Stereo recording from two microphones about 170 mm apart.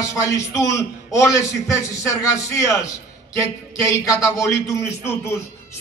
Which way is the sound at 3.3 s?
20° left (ahead or behind).